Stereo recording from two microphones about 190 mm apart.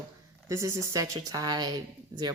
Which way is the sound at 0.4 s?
15° right (ahead or behind).